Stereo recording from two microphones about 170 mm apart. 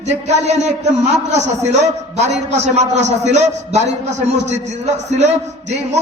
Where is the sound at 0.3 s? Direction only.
40° right (ahead or behind).